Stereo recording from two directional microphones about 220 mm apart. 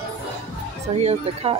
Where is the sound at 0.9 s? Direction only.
25° right (ahead or behind).